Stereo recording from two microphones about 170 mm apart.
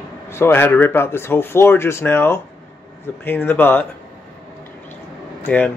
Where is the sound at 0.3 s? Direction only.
15° left (ahead or behind).